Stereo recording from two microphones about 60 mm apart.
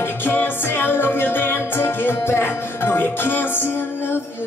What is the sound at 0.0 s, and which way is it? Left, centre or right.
Music, left.